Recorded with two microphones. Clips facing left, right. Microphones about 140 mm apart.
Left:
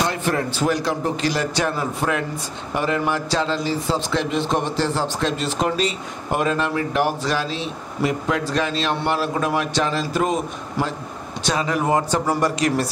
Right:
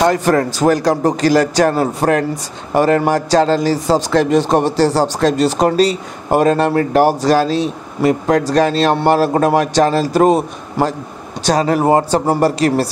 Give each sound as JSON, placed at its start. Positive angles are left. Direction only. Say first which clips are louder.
{"t": 0.1, "sound": "a man's voice", "louder": "right 8 dB", "side_deg": -45}